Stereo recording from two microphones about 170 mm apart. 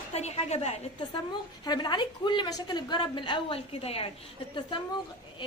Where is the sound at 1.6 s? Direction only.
25° left (ahead or behind).